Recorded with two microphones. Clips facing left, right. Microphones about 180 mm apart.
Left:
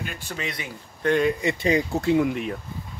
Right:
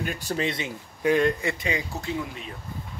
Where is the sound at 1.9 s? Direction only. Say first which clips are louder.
Left 10 dB; 65° left (ahead or behind).